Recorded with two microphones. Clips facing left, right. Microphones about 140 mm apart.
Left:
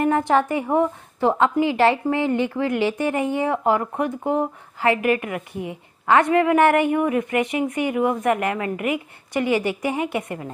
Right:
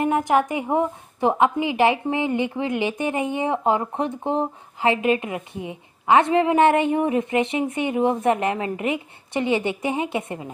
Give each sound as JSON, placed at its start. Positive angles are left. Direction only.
{"t": 0.0, "sound": "a woman's voice", "side_deg": -15}